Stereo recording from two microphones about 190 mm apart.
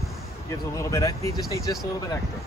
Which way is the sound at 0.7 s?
15° left (ahead or behind).